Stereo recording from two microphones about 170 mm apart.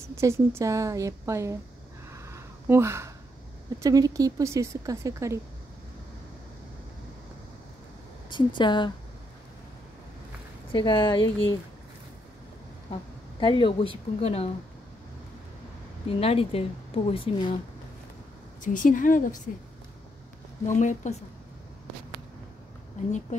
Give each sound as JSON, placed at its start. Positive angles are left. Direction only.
{"t": 0.1, "sound": "a woman's voice", "side_deg": -15}
{"t": 2.1, "sound": "a sound", "side_deg": -15}
{"t": 3.8, "sound": "speech", "side_deg": -20}
{"t": 8.3, "sound": "speech", "side_deg": 30}
{"t": 10.7, "sound": "speech", "side_deg": 30}
{"t": 13.4, "sound": "speech", "side_deg": 30}
{"t": 16.1, "sound": "speech", "side_deg": 35}
{"t": 18.6, "sound": "speech", "side_deg": 50}
{"t": 20.6, "sound": "speech", "side_deg": 45}
{"t": 23.0, "sound": "speech", "side_deg": 45}